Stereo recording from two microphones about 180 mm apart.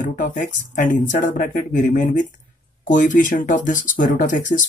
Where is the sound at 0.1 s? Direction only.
45° left (ahead or behind).